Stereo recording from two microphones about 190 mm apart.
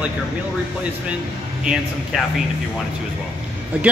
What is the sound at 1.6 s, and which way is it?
Speech, 5° right (ahead or behind).